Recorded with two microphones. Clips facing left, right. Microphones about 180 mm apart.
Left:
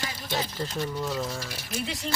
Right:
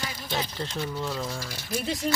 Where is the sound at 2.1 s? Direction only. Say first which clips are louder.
Right 5 dB; 45° right (ahead or behind).